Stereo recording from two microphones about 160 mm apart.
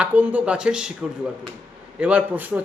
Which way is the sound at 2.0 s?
10° right (ahead or behind).